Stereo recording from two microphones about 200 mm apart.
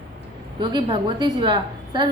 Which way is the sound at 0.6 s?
25° right (ahead or behind).